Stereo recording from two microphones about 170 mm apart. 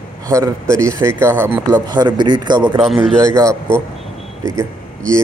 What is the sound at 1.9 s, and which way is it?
A man's voice, 25° right (ahead or behind).